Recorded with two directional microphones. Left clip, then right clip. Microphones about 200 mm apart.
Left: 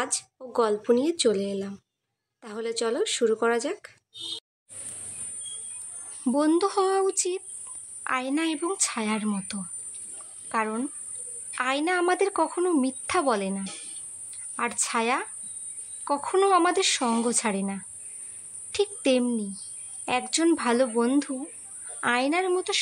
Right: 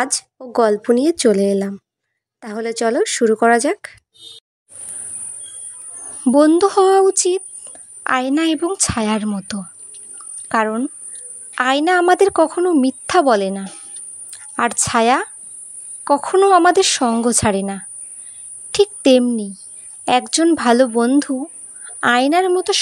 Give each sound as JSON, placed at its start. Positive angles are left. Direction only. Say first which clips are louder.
{"t": 0.0, "sound": "a woman's voice", "louder": "right 10 dB", "side_deg": -35}
{"t": 6.2, "sound": "a woman's voice", "louder": "right 11 dB", "side_deg": -35}